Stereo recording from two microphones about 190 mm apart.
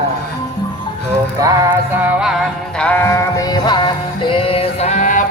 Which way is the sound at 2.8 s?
10° left (ahead or behind).